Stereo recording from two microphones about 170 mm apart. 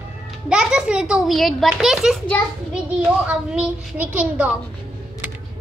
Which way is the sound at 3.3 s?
5° right (ahead or behind).